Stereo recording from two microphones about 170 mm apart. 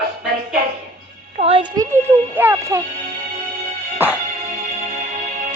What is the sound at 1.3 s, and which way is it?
Speech, 35° right (ahead or behind).